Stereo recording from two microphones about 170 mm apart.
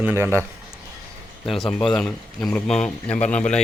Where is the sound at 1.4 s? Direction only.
Centre (ahead or behind).